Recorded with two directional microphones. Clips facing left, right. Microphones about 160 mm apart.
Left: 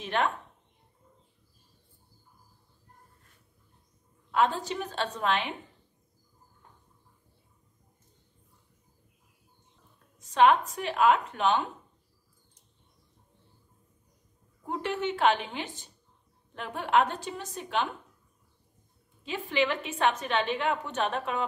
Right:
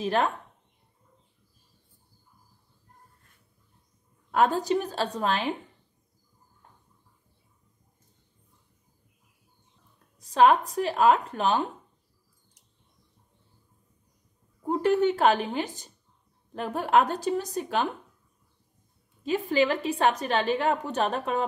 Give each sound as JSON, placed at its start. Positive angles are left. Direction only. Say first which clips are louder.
{"t": 0.0, "sound": "a woman's voice", "louder": "right 3 dB", "side_deg": -35}
{"t": 4.3, "sound": "a woman's voice", "louder": "right 4 dB", "side_deg": -45}
{"t": 10.1, "sound": "a sound", "louder": "right 2 dB", "side_deg": -35}
{"t": 10.7, "sound": "a woman's voice", "louder": "right 3 dB", "side_deg": -35}
{"t": 14.7, "sound": "a woman's voice", "louder": "right 8 dB", "side_deg": -40}
{"t": 19.2, "sound": "a woman's voice", "louder": "right 5 dB", "side_deg": -40}